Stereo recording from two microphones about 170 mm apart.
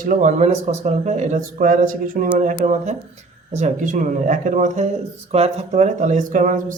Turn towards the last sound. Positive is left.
turn(degrees=-50)  # may be behind; listen again after turning